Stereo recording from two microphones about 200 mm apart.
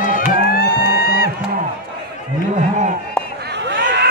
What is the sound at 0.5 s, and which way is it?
Music, 50° left (ahead or behind).